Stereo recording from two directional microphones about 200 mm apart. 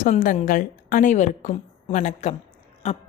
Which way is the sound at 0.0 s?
40° left (ahead or behind).